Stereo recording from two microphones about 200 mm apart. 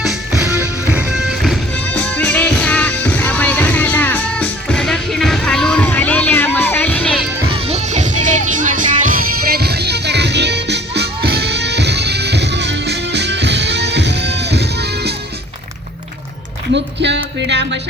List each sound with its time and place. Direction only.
0.4 s music: 10° right (ahead or behind); by 7.3 s 5° left (ahead or behind)
7.5 s music: 30° right (ahead or behind); by 15.1 s 55° right (ahead or behind)
16.7 s music: 60° right (ahead or behind)